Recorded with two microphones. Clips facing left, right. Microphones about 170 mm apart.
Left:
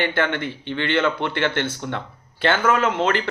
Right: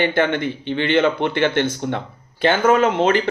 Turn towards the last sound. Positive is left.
turn(degrees=-20)  # may be behind; listen again after turning